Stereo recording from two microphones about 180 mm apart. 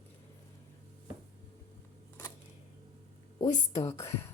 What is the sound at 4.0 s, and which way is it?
Speech, 15° left (ahead or behind).